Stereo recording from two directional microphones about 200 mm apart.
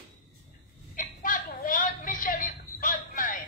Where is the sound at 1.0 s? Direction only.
40° left (ahead or behind).